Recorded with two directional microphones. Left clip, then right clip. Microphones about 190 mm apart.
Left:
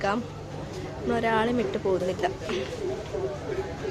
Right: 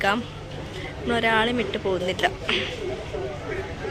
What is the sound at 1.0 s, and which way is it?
Speech, 5° left (ahead or behind).